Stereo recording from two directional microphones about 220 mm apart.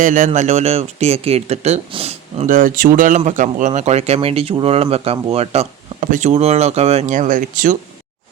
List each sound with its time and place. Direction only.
0.0 s speech: 35° right (ahead or behind)